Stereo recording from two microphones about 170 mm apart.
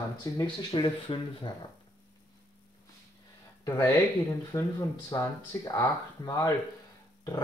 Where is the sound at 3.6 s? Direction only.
15° left (ahead or behind).